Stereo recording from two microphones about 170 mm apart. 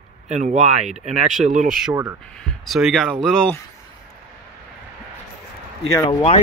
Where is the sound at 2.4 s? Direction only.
Centre (ahead or behind).